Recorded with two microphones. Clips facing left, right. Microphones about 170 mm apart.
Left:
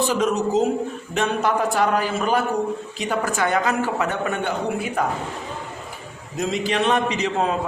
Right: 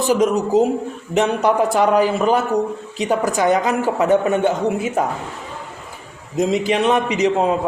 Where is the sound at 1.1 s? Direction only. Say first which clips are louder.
Right 5 dB; 20° right (ahead or behind).